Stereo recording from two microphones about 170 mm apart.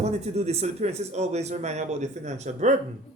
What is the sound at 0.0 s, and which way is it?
Speech, 40° right (ahead or behind).